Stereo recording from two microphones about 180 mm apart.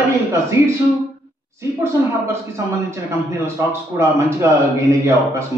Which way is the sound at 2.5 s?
15° right (ahead or behind).